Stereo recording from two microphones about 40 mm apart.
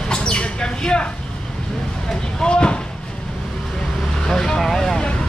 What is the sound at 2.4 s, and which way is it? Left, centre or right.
Speech, left.